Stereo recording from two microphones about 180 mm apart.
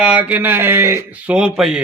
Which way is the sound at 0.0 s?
5° right (ahead or behind).